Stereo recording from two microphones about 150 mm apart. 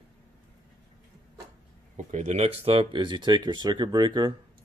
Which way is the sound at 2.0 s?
50° right (ahead or behind).